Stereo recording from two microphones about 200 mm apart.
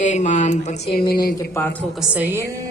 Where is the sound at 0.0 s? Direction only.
35° left (ahead or behind).